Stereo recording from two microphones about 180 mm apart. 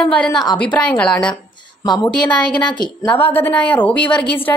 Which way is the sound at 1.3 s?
20° left (ahead or behind).